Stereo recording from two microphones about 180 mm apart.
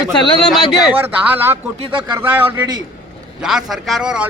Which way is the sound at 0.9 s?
10° right (ahead or behind).